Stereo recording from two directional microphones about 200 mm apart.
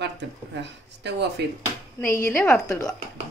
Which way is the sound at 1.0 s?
55° right (ahead or behind).